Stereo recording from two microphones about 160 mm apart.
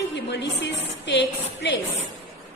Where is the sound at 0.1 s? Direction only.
90° left.